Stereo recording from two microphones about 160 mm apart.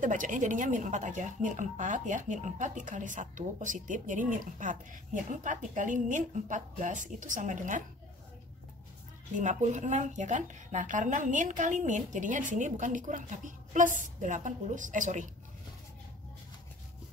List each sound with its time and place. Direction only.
0.0 s speech: 55° right (ahead or behind)
9.4 s speech: 50° right (ahead or behind)